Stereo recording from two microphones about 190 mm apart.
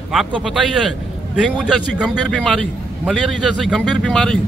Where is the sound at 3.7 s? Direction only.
Centre (ahead or behind).